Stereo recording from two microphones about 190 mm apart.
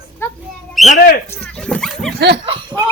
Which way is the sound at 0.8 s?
45° left (ahead or behind).